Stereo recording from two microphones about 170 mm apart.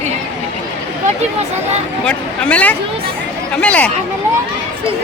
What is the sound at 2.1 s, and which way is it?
Speech, 10° left (ahead or behind).